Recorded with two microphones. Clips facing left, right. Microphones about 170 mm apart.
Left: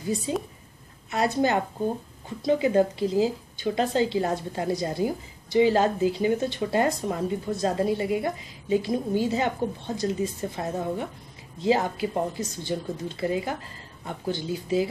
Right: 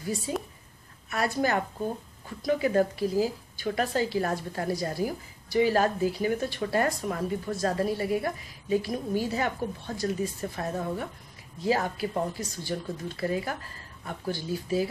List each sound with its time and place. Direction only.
0.3 s a woman's voice: 25° left (ahead or behind)